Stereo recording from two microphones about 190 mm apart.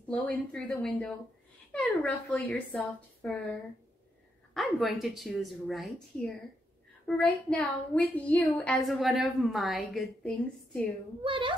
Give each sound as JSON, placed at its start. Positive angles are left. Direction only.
{"t": 0.1, "sound": "a woman's voice", "side_deg": 5}
{"t": 4.6, "sound": "a woman's voice", "side_deg": 0}
{"t": 11.2, "sound": "a child's voice", "side_deg": -25}